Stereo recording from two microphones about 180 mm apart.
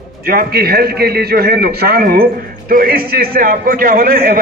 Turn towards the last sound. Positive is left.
turn(degrees=-55)  # may be behind; listen again after turning